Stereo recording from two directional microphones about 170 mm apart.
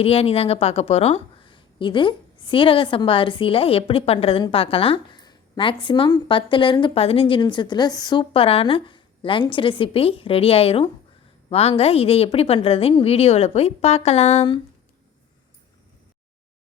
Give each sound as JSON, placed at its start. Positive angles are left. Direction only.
{"t": 0.0, "sound": "a woman's voice", "side_deg": 35}